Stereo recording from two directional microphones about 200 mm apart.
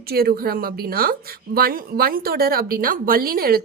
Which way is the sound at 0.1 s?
50° right (ahead or behind).